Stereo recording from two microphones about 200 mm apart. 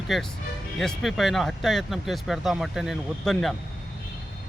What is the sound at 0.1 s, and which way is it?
Speech, centre (ahead or behind).